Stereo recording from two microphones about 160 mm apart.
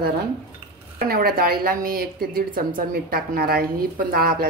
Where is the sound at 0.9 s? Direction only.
70° right (ahead or behind).